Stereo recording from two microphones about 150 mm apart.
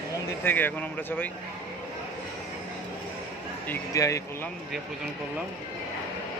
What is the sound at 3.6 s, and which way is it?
Speech, 15° left (ahead or behind).